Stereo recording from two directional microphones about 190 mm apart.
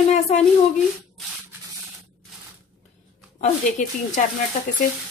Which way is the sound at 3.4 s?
40° left (ahead or behind).